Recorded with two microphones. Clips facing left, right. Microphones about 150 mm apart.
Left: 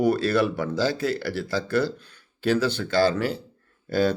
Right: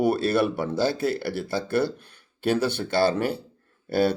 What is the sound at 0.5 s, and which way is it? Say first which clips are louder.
Speech: even; 25° right (ahead or behind).